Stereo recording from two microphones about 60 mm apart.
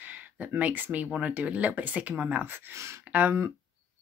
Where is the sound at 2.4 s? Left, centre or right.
Right.